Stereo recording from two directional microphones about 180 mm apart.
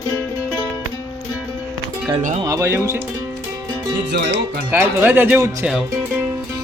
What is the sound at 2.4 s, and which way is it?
Speech, 15° right (ahead or behind).